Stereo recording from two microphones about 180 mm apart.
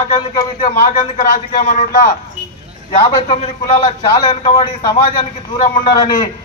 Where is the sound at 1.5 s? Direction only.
45° left (ahead or behind).